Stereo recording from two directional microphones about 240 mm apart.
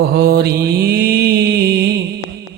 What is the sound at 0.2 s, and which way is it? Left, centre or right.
Mantra, right.